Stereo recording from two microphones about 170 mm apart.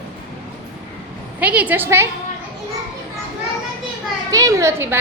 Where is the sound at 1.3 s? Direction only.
10° right (ahead or behind).